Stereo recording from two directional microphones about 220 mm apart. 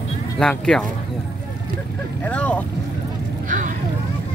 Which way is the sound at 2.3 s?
5° left (ahead or behind).